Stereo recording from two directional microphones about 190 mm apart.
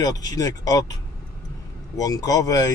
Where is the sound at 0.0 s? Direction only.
20° left (ahead or behind).